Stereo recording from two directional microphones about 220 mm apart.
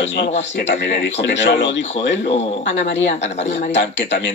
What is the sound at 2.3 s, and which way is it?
Speech, 30° left (ahead or behind).